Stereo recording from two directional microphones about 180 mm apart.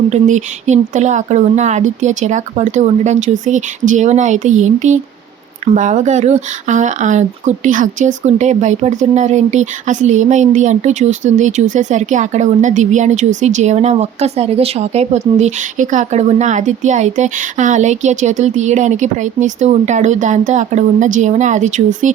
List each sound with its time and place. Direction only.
0.1 s speech: 40° right (ahead or behind)